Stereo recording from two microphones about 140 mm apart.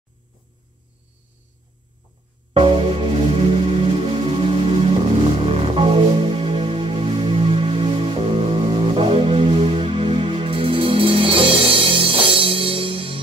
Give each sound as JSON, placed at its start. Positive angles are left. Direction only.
{"t": 2.6, "sound": "music", "side_deg": -45}